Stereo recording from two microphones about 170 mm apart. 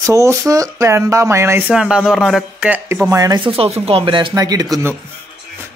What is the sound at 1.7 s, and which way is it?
Speech, 5° right (ahead or behind).